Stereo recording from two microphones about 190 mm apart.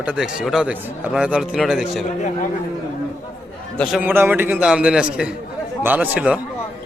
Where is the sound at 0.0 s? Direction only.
5° right (ahead or behind).